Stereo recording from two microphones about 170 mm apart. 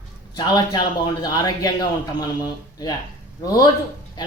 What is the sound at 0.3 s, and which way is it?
Speech, 25° left (ahead or behind).